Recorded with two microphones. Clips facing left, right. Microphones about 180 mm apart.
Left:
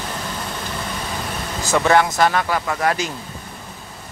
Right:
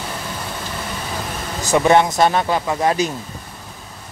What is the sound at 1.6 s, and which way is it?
Speech, 15° right (ahead or behind).